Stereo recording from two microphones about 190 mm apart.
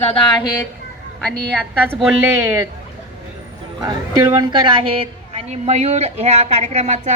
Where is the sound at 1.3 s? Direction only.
55° right (ahead or behind).